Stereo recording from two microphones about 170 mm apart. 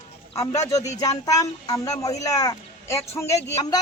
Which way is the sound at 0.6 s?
20° left (ahead or behind).